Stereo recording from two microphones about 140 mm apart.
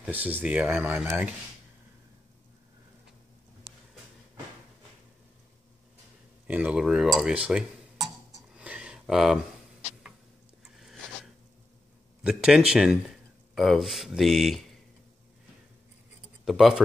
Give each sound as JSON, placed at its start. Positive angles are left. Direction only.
{"t": 0.0, "sound": "speech", "side_deg": -10}
{"t": 6.4, "sound": "cutlery", "side_deg": -10}
{"t": 12.2, "sound": "speech", "side_deg": -5}
{"t": 16.4, "sound": "speech", "side_deg": -5}